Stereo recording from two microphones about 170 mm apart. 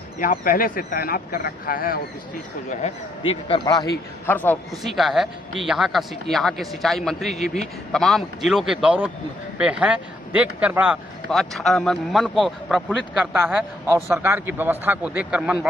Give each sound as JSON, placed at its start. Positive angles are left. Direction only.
{"t": 0.2, "sound": "speech", "side_deg": 55}
{"t": 3.2, "sound": "a man's voice", "side_deg": 30}
{"t": 3.9, "sound": "a man's voice", "side_deg": 10}